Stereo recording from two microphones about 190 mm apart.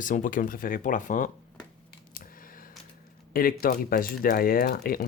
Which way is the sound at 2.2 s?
50° left (ahead or behind).